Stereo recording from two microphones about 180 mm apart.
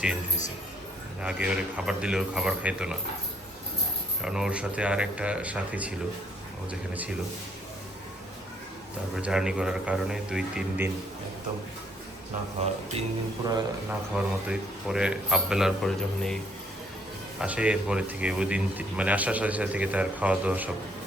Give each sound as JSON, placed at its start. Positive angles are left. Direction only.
{"t": 1.2, "sound": "a man's voice", "side_deg": -5}
{"t": 4.2, "sound": "speech", "side_deg": -5}
{"t": 9.1, "sound": "a man's voice", "side_deg": -5}
{"t": 12.6, "sound": "speech", "side_deg": -40}
{"t": 13.4, "sound": "speech", "side_deg": -20}
{"t": 14.1, "sound": "a man's voice", "side_deg": -5}
{"t": 17.4, "sound": "speech", "side_deg": -5}